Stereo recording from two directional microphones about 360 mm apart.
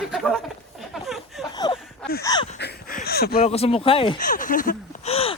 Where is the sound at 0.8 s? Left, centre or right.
Centre.